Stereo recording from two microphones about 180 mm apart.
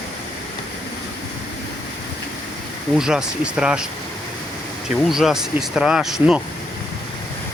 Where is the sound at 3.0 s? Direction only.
5° right (ahead or behind).